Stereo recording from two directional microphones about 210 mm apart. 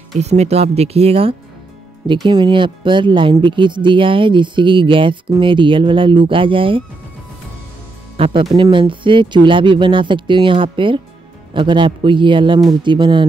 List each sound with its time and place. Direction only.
0.2 s speech: 30° right (ahead or behind)
8.2 s speech: 25° right (ahead or behind)